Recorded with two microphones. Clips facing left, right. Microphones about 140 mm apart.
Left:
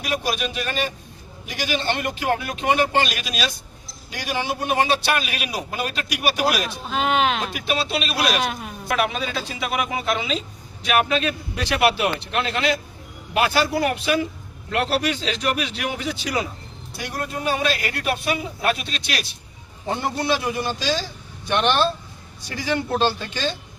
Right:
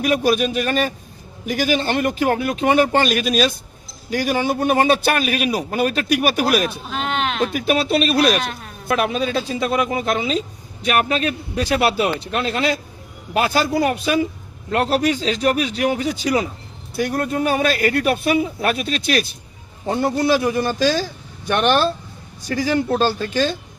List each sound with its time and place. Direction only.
0.0 s a man's voice: 45° right (ahead or behind)
6.9 s a sound: 5° left (ahead or behind)
7.5 s a man's voice: 50° right (ahead or behind)
8.4 s a woman's voice: 10° left (ahead or behind)
9.0 s a man's voice: 40° right (ahead or behind)
13.3 s a man's voice: 40° right (ahead or behind)